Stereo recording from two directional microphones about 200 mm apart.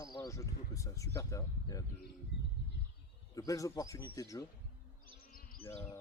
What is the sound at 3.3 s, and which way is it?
Speech, 15° left (ahead or behind).